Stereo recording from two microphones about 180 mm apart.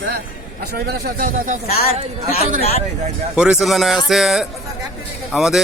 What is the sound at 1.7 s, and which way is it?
Speech, 55° left (ahead or behind).